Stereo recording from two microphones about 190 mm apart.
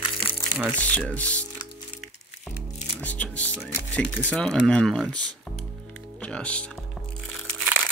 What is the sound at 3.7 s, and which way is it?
Speech, 10° left (ahead or behind).